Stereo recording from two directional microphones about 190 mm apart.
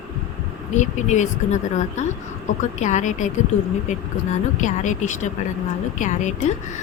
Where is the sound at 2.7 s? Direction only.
40° left (ahead or behind).